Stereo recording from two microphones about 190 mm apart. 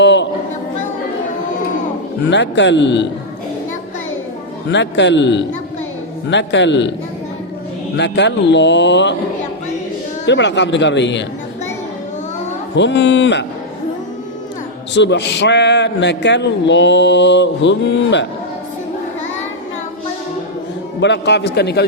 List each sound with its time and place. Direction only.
0.0 s chatter: 70° left (ahead or behind)
2.3 s a man's voice: 70° left (ahead or behind)
4.7 s a man's voice: 70° left (ahead or behind)
7.9 s a man's voice: 65° left (ahead or behind)
10.2 s a man's voice: 70° left (ahead or behind)
12.7 s a man's voice: 70° left (ahead or behind)
14.9 s a man's voice: 65° left (ahead or behind)
21.0 s a man's voice: 65° left (ahead or behind)